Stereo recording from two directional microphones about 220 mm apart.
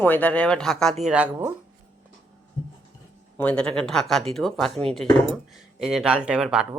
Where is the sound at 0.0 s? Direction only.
5° left (ahead or behind).